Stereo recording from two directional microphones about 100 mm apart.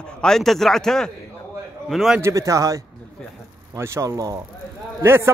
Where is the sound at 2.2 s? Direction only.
30° right (ahead or behind).